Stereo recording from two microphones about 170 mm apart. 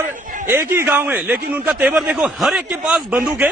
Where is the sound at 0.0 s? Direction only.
15° right (ahead or behind).